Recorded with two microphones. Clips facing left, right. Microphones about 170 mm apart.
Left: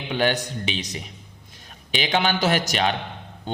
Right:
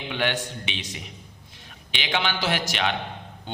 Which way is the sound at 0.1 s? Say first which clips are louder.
Left 5 dB; 40° left (ahead or behind).